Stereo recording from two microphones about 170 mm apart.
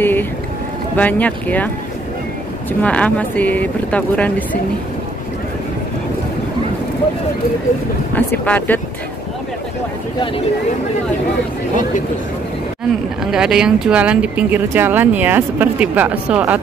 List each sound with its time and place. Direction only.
0.0 s a sound: 10° left (ahead or behind)
0.9 s speech: 10° left (ahead or behind)
2.8 s speech: 10° left (ahead or behind)
8.1 s speech: 10° left (ahead or behind)
13.2 s speech: 5° right (ahead or behind)